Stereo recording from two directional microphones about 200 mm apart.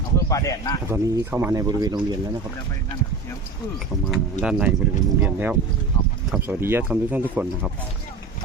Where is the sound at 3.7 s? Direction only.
Centre (ahead or behind).